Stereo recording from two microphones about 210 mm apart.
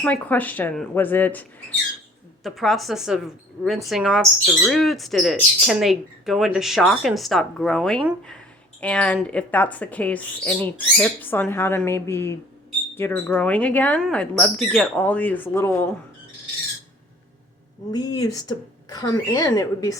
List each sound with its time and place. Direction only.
0.0 s speech: 5° left (ahead or behind)
17.9 s speech: 20° left (ahead or behind)